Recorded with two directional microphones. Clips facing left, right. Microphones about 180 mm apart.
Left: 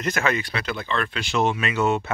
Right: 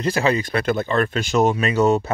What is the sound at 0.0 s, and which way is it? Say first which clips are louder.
Speech: right 4 dB; 30° right (ahead or behind).